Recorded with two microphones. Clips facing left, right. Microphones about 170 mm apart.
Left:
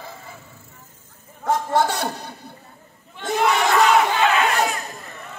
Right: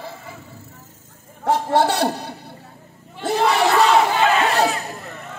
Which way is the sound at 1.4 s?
30° right (ahead or behind).